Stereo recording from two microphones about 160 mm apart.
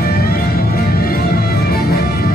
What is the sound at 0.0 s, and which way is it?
Music, 70° left (ahead or behind).